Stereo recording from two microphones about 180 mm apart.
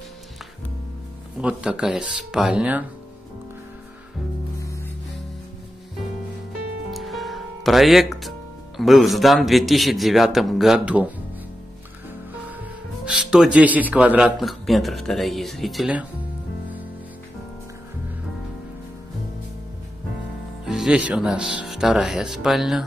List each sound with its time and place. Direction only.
1.4 s a man's voice: 5° right (ahead or behind)
6.9 s speech: centre (ahead or behind)
13.0 s a man's voice: 5° right (ahead or behind)
20.6 s a man's voice: 5° right (ahead or behind)